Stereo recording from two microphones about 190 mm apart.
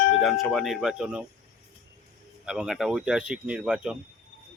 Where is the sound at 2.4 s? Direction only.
5° right (ahead or behind).